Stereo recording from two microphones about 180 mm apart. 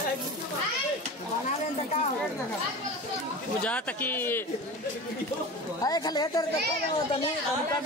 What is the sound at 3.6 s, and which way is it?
Speech, 10° left (ahead or behind).